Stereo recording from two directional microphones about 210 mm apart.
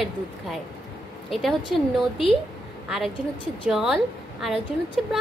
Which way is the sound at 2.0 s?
Centre (ahead or behind).